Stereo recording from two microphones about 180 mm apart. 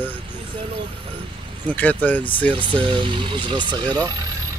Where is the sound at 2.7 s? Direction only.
30° right (ahead or behind).